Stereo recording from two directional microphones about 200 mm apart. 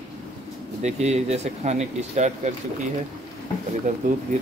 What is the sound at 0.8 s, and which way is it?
Speech, 35° right (ahead or behind).